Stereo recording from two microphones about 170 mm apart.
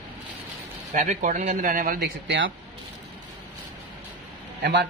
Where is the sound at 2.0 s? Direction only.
90° right.